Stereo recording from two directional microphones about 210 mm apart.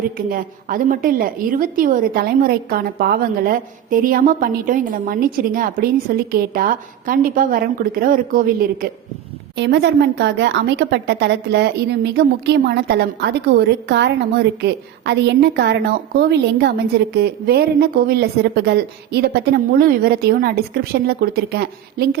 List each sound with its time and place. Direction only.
0.3 s a woman's voice: 40° right (ahead or behind)
9.6 s a woman's voice: 50° right (ahead or behind)